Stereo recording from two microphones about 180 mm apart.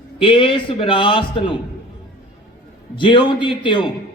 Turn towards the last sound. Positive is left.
turn(degrees=25)  # may be behind; listen again after turning